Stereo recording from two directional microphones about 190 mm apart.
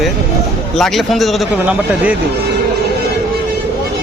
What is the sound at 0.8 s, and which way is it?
Speech, centre (ahead or behind).